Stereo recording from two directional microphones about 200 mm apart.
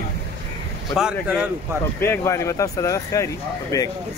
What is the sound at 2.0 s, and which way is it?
Speech, 15° left (ahead or behind).